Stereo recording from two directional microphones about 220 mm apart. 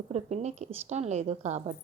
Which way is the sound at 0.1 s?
30° right (ahead or behind).